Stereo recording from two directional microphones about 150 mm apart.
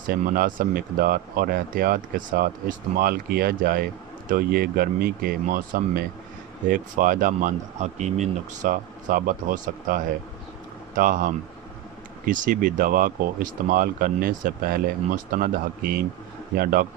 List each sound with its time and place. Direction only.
0.1 s speech: 75° right (ahead or behind)
6.7 s speech: 60° right (ahead or behind)